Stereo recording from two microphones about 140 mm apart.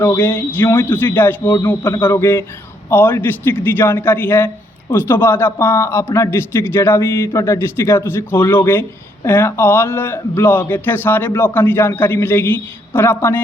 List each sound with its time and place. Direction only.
0.0 s a man's voice: 20° left (ahead or behind)